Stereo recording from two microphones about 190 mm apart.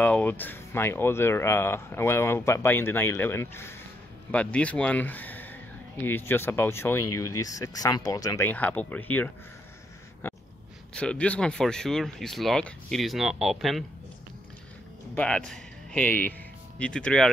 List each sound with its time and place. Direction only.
0.0 s speech: 10° left (ahead or behind)
10.9 s speech: 5° left (ahead or behind)
15.1 s speech: 5° left (ahead or behind)